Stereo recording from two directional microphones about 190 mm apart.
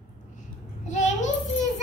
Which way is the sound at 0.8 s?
40° left (ahead or behind).